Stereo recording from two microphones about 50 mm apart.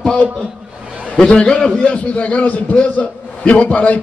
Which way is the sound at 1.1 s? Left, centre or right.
Centre.